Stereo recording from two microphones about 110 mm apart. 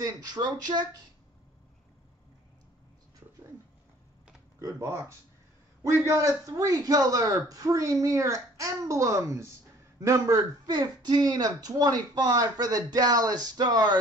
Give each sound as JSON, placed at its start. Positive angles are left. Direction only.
{"t": 0.0, "sound": "speech", "side_deg": -35}
{"t": 4.6, "sound": "a man's voice", "side_deg": -25}